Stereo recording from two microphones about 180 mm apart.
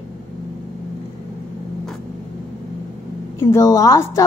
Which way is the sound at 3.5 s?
20° left (ahead or behind).